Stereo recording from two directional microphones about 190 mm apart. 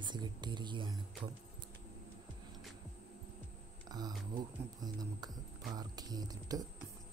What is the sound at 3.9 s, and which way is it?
Speech, 20° right (ahead or behind).